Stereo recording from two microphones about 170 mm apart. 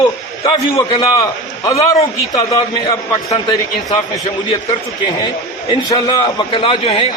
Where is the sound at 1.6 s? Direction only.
20° left (ahead or behind).